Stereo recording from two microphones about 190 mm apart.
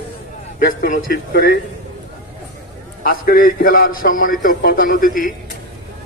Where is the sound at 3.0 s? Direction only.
50° left (ahead or behind).